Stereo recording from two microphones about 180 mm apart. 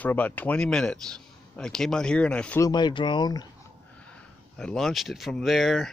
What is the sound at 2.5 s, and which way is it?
Speech, 20° left (ahead or behind).